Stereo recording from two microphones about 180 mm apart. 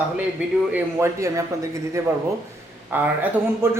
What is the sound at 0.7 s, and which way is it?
A man's voice, 15° right (ahead or behind).